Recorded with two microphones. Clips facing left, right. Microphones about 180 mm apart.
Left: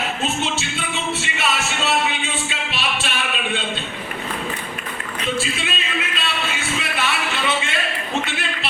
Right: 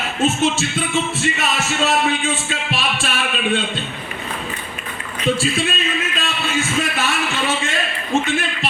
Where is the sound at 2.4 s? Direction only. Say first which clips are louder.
Right 3 dB; 40° right (ahead or behind).